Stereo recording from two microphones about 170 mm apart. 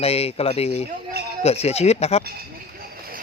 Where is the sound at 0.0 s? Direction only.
35° left (ahead or behind).